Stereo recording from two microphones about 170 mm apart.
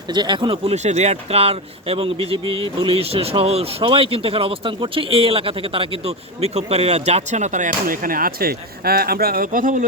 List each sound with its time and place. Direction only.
0.1 s speech: 25° right (ahead or behind); by 9.7 s 55° right (ahead or behind)